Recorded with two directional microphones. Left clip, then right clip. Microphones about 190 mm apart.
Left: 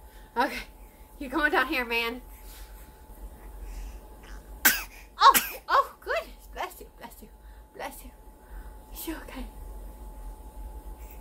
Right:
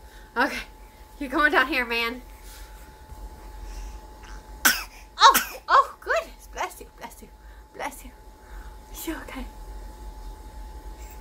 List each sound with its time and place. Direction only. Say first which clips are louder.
0.3 s a woman's voice: right 3 dB; 5° right (ahead or behind)
4.2 s cough: right 2 dB; 15° left (ahead or behind)
5.3 s crying: right 2 dB; 15° left (ahead or behind)
5.7 s a sound: right 6 dB; 10° right (ahead or behind)
8.9 s whispering: right 4 dB; 10° right (ahead or behind)